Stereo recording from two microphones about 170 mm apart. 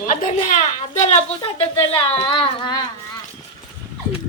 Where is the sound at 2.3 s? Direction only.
30° left (ahead or behind).